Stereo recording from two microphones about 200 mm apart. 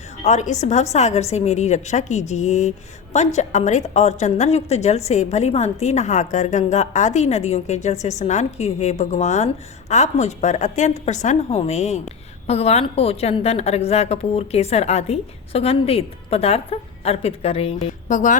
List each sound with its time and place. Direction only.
0.3 s a woman's voice: 35° left (ahead or behind)